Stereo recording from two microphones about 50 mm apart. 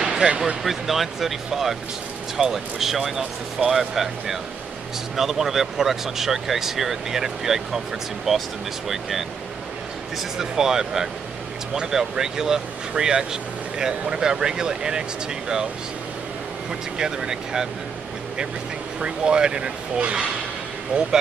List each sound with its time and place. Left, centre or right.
0.0 s speech: centre
0.7 s speech: centre
17.0 s speech: centre
18.9 s speech: centre